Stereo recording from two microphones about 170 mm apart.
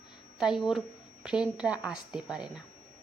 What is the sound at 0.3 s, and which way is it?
Speech, 5° right (ahead or behind).